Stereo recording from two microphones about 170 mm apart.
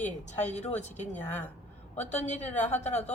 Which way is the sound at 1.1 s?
10° left (ahead or behind).